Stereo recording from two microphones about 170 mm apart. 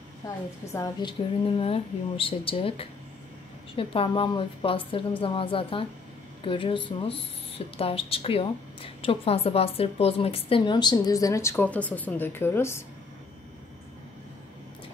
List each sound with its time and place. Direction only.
1.0 s speech: 35° left (ahead or behind); by 12.8 s 15° left (ahead or behind)